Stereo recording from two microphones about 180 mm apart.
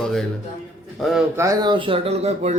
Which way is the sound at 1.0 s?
Centre (ahead or behind).